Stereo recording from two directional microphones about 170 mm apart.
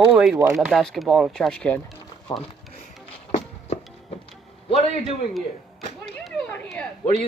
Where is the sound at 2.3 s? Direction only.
30° left (ahead or behind).